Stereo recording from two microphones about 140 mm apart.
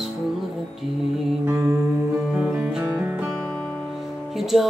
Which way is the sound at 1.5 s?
20° right (ahead or behind).